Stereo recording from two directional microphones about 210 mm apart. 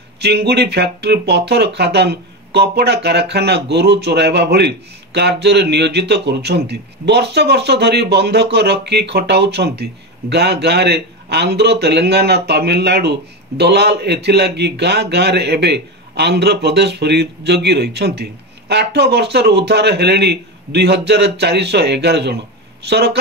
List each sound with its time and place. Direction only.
0.2 s a man's voice: 50° right (ahead or behind)